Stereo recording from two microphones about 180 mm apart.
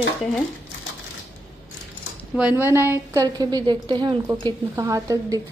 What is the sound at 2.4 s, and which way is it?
A woman's voice, 10° right (ahead or behind).